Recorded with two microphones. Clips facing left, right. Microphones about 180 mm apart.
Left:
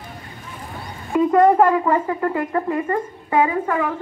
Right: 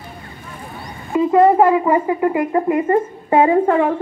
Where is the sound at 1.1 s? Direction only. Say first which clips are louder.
Right 2 dB; 5° right (ahead or behind).